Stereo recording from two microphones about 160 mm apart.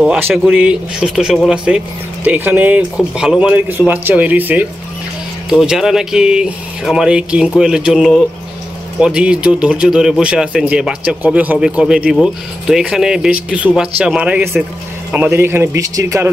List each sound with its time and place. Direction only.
0.0 s speech: 5° right (ahead or behind); by 16.3 s 20° right (ahead or behind)